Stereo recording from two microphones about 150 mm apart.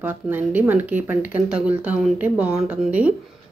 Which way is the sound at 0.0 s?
10° right (ahead or behind).